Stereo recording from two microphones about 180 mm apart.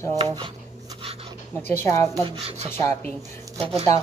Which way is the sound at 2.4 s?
35° right (ahead or behind).